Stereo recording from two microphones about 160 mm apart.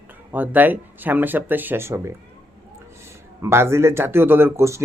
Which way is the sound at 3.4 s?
15° right (ahead or behind).